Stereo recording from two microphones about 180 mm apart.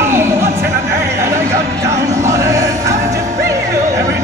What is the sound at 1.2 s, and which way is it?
Music, 15° right (ahead or behind).